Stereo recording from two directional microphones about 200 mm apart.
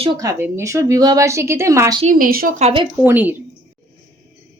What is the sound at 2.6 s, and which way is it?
Speech, 30° right (ahead or behind).